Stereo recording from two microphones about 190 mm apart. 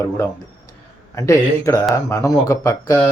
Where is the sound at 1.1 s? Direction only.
15° left (ahead or behind).